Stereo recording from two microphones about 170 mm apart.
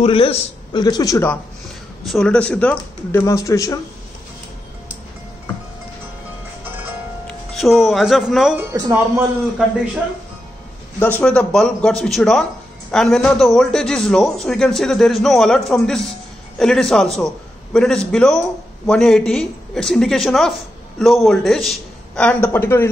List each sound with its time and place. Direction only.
0.0 s a man's voice: 35° left (ahead or behind); by 1.4 s 15° left (ahead or behind)
2.0 s speech: 5° left (ahead or behind); by 3.8 s 20° left (ahead or behind)
7.5 s a man's voice: centre (ahead or behind)
8.5 s speech: 15° right (ahead or behind)
11.0 s a man's voice: 10° left (ahead or behind)